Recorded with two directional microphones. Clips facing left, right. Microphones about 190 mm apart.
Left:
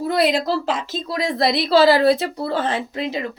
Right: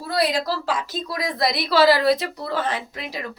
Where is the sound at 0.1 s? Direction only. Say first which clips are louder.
Left 3 dB; 25° left (ahead or behind).